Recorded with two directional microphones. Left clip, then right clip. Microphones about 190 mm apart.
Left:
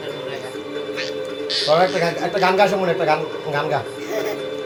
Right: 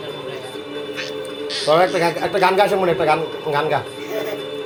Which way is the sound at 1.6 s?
60° right (ahead or behind).